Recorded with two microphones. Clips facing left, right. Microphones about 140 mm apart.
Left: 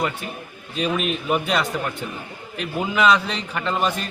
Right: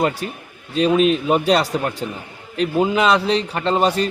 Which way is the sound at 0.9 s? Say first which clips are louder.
Right 7 dB; 30° right (ahead or behind).